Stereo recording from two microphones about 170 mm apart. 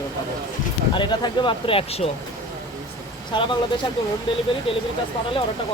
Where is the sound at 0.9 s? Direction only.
25° left (ahead or behind).